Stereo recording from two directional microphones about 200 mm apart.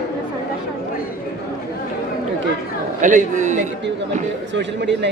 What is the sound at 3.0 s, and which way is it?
Speech, 40° right (ahead or behind).